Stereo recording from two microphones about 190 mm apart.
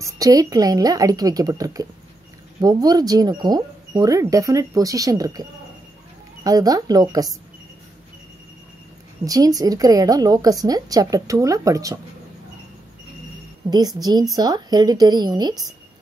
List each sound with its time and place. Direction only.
0.0 s speech: 20° right (ahead or behind)
9.2 s speech: 20° right (ahead or behind)
13.7 s speech: 20° right (ahead or behind)